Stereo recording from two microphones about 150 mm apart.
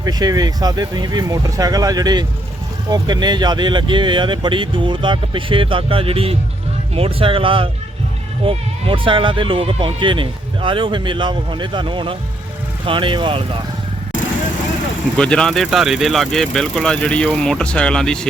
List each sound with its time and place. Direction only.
0.0 s speech: 25° right (ahead or behind)
15.2 s speech: 5° left (ahead or behind)